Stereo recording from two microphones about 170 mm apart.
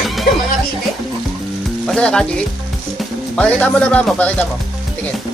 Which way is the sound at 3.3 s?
10° left (ahead or behind).